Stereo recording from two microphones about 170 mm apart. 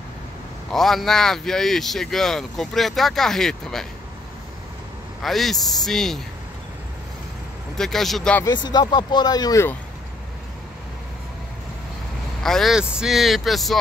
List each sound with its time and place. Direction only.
0.7 s speech: centre (ahead or behind)
5.2 s speech: centre (ahead or behind)
7.7 s speech: centre (ahead or behind)
8.6 s speech: 25° left (ahead or behind)
12.4 s speech: centre (ahead or behind)